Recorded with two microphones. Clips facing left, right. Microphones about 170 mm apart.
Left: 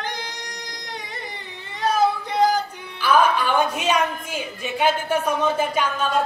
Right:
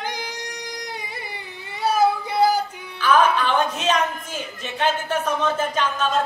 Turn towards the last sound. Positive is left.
turn(degrees=10)  # may be behind; listen again after turning